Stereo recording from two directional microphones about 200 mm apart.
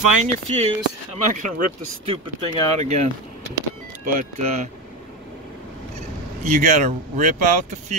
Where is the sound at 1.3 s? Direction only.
40° right (ahead or behind).